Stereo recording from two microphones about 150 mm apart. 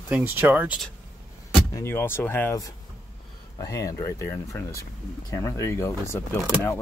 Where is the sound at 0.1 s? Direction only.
15° right (ahead or behind).